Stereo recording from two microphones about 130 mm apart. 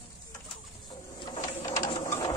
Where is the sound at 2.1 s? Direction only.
20° left (ahead or behind).